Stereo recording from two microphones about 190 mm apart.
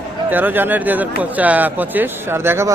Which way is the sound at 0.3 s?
10° right (ahead or behind).